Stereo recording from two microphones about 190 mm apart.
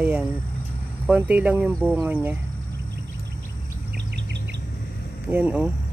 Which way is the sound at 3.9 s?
60° right (ahead or behind).